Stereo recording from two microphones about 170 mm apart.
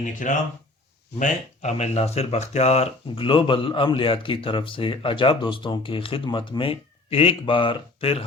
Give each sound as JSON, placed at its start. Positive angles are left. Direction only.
{"t": 0.0, "sound": "speech", "side_deg": 50}